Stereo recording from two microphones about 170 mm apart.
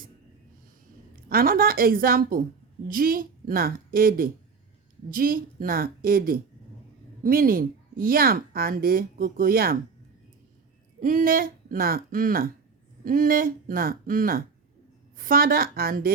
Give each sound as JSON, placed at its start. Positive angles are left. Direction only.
{"t": 1.1, "sound": "a woman's voice", "side_deg": -60}
{"t": 11.0, "sound": "a woman's voice", "side_deg": -55}